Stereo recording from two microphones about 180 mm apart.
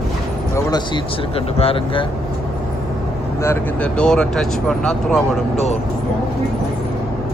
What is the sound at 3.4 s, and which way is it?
Speech, 10° left (ahead or behind).